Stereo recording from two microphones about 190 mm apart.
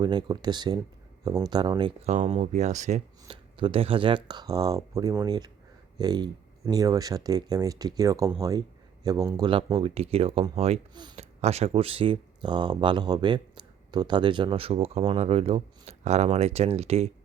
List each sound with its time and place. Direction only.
0.0 s speech: 20° right (ahead or behind)
2.0 s speech: 35° right (ahead or behind)